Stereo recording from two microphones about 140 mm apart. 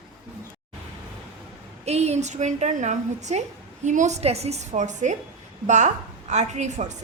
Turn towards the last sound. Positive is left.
turn(degrees=-55)  # may be behind; listen again after turning